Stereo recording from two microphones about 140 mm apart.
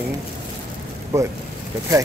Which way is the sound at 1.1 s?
20° right (ahead or behind).